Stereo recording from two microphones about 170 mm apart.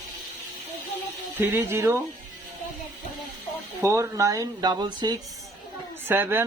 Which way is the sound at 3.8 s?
20° right (ahead or behind).